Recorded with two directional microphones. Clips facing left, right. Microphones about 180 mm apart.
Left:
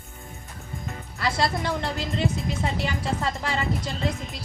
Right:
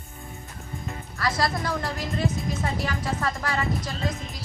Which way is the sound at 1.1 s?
25° left (ahead or behind).